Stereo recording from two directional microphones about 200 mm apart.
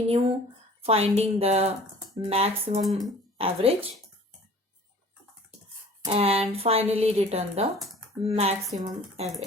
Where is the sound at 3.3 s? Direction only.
30° right (ahead or behind).